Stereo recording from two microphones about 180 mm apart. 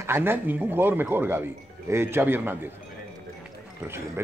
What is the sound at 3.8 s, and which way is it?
Speech, 15° right (ahead or behind).